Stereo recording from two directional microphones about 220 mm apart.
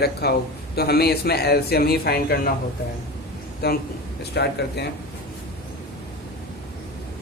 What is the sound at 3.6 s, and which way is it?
Speech, 45° left (ahead or behind).